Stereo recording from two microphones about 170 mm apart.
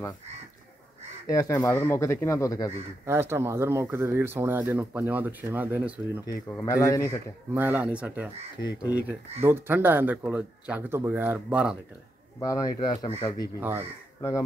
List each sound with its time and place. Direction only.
1.2 s speech: 20° left (ahead or behind)
3.1 s speech: 15° right (ahead or behind)
6.6 s speech: 20° left (ahead or behind)
7.5 s speech: 10° right (ahead or behind)
12.4 s speech: 20° left (ahead or behind)
12.7 s speech: 40° left (ahead or behind)
13.0 s speech: 25° left (ahead or behind)
13.6 s speech: 15° right (ahead or behind)